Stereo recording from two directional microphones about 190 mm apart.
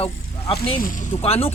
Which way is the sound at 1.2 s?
30° left (ahead or behind).